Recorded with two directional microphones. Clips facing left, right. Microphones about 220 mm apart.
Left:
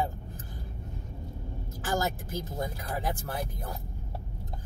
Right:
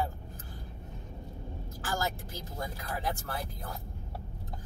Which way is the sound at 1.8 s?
20° left (ahead or behind).